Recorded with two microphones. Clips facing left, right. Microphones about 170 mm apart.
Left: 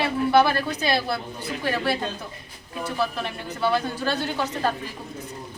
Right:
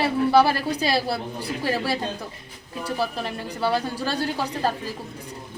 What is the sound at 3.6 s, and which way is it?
Speech, 35° right (ahead or behind).